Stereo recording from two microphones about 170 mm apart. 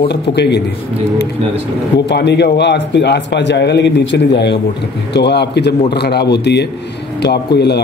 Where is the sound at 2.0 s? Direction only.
90° left.